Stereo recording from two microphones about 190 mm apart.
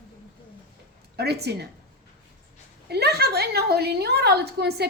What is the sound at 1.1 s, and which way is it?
Speech, 60° right (ahead or behind).